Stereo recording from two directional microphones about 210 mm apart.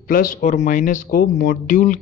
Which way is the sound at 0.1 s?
40° left (ahead or behind).